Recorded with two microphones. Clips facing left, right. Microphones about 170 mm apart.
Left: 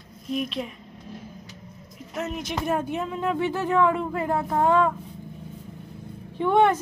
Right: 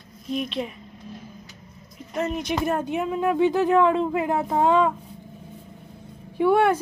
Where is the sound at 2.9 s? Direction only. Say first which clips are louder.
Right 3 dB; 15° right (ahead or behind).